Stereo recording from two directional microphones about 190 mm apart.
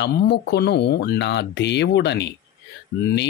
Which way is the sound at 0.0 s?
65° left (ahead or behind).